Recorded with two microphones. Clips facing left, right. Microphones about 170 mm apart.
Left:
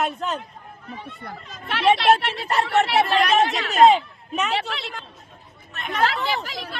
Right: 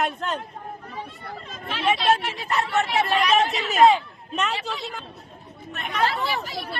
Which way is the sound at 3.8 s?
20° left (ahead or behind).